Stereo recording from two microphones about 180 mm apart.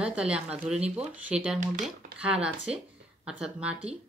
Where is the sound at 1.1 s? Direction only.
5° right (ahead or behind).